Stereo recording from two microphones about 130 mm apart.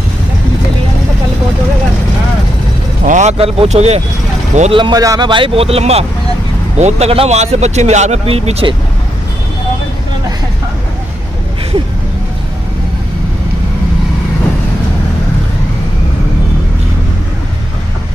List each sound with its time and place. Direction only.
3.1 s a sound: 65° right (ahead or behind)
3.3 s speech: 50° right (ahead or behind)
4.7 s a man's voice: 40° right (ahead or behind)
5.0 s speech: 25° right (ahead or behind)
5.3 s speech: 45° right (ahead or behind)